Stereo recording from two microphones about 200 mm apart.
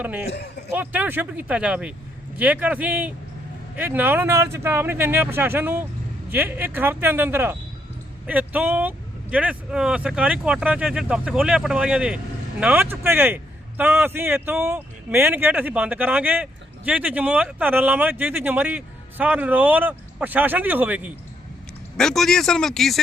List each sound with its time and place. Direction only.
0.0 s speech: 10° right (ahead or behind)
0.3 s a man's voice: 55° left (ahead or behind)
0.7 s speech: 10° right (ahead or behind)